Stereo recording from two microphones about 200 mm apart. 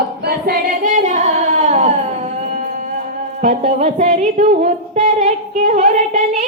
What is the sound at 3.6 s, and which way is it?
Female singing, 35° right (ahead or behind).